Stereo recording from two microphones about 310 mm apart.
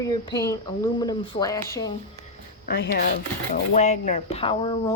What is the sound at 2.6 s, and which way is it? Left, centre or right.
Speech, left.